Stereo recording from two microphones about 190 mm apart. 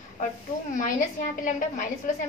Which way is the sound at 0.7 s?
45° left (ahead or behind).